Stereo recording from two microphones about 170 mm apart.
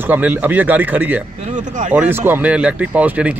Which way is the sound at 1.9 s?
10° right (ahead or behind).